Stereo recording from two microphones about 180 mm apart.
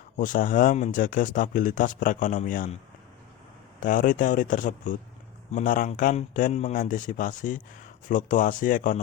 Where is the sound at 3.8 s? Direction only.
45° left (ahead or behind).